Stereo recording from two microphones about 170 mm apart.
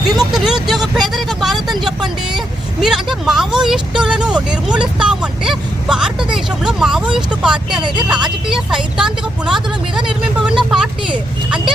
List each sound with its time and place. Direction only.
0.0 s speech: centre (ahead or behind)
7.8 s speech: 25° right (ahead or behind)
8.0 s speech: 5° right (ahead or behind)
10.1 s vehicle: 5° right (ahead or behind)